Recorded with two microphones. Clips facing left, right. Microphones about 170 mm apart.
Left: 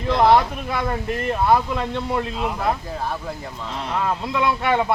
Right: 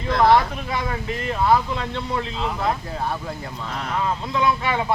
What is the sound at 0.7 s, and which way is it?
Speech, 55° left (ahead or behind).